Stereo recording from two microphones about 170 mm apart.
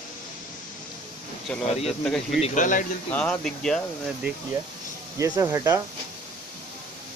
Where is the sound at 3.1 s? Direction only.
5° left (ahead or behind).